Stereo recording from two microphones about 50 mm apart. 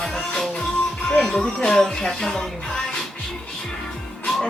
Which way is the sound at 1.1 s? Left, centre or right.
Centre.